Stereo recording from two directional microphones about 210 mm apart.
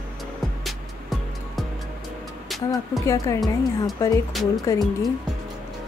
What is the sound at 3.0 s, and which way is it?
Speech, 15° left (ahead or behind).